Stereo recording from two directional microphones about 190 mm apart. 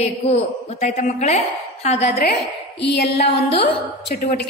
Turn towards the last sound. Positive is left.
turn(degrees=55)  # may be behind; listen again after turning